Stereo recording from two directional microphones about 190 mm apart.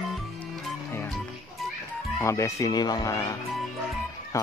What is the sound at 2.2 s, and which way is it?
Speech, 15° left (ahead or behind).